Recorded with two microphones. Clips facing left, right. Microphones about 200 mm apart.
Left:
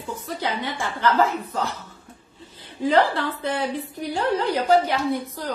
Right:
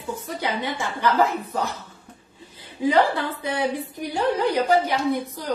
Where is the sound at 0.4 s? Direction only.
15° right (ahead or behind).